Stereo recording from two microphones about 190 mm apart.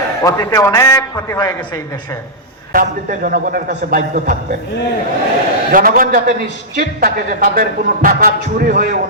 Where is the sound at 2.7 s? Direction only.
45° right (ahead or behind).